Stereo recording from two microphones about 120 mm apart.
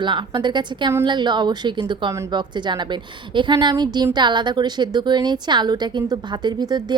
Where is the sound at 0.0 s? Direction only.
40° right (ahead or behind).